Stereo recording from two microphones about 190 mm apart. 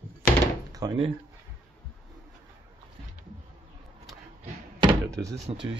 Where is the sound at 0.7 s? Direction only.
25° right (ahead or behind).